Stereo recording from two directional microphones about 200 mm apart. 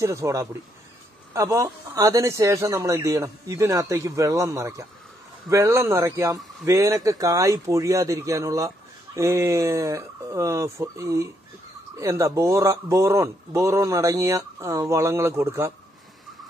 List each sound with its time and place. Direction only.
0.0 s speech: 15° right (ahead or behind)